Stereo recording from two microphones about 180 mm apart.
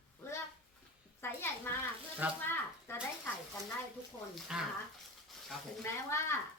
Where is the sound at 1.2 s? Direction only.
10° left (ahead or behind).